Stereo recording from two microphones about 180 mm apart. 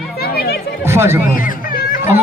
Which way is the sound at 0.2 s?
60° left (ahead or behind).